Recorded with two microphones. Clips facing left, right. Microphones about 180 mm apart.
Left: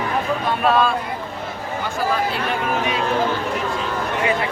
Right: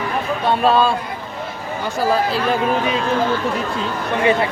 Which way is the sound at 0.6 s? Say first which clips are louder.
Right 2 dB; 30° right (ahead or behind).